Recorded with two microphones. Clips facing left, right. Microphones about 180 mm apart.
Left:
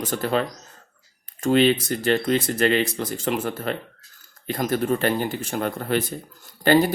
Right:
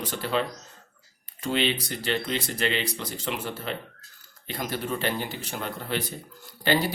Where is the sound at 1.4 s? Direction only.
45° left (ahead or behind).